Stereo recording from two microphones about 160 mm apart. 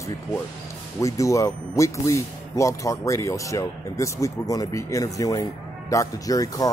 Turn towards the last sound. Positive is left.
turn(degrees=20)  # may be behind; listen again after turning